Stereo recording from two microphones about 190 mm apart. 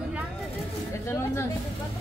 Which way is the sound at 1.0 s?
15° left (ahead or behind).